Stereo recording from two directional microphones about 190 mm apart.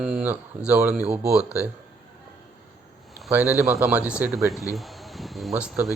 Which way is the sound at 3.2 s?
5° right (ahead or behind).